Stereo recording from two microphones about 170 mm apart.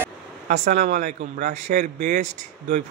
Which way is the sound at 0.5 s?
50° right (ahead or behind).